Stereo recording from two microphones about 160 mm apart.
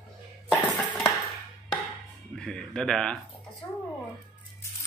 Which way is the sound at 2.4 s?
5° left (ahead or behind).